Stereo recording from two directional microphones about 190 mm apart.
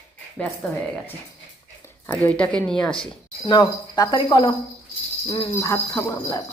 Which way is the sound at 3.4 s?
20° left (ahead or behind).